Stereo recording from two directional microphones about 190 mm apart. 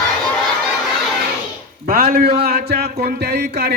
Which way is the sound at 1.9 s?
50° right (ahead or behind).